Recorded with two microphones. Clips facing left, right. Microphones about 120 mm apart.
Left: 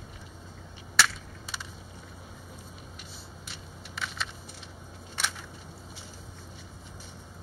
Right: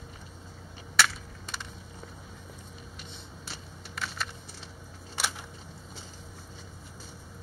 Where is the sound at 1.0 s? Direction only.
Centre (ahead or behind).